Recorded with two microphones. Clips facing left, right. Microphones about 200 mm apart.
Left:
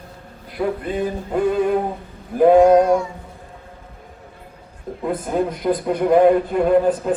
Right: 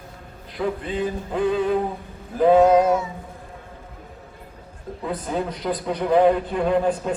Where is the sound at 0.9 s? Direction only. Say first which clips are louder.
Left 3 dB; 50° left (ahead or behind).